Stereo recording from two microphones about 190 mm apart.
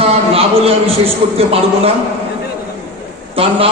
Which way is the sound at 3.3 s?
30° right (ahead or behind).